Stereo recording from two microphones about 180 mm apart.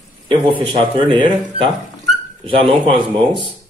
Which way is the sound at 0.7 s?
25° right (ahead or behind).